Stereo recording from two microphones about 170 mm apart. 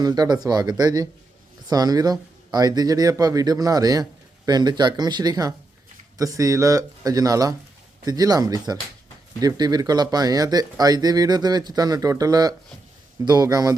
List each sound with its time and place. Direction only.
0.0 s speech: 25° right (ahead or behind)